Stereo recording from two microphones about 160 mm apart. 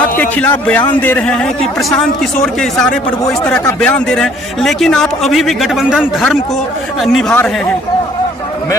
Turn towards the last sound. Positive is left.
turn(degrees=0)  # may be behind; listen again after turning